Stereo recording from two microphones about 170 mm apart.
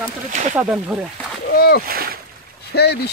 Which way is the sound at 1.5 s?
65° left (ahead or behind).